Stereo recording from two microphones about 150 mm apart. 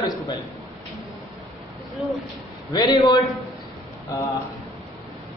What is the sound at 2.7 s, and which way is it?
Speech, 30° left (ahead or behind).